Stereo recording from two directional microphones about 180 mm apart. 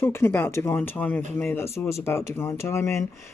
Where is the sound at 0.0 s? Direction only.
15° left (ahead or behind).